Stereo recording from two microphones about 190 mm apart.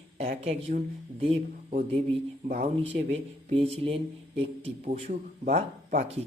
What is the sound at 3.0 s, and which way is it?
Speech, 30° right (ahead or behind).